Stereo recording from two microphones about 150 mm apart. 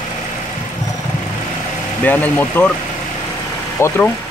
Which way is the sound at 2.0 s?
10° left (ahead or behind).